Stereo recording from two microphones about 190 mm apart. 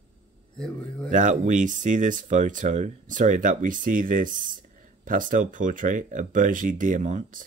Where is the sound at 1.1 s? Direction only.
40° right (ahead or behind).